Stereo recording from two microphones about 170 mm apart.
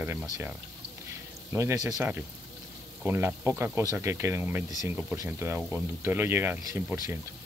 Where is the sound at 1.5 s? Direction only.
15° right (ahead or behind).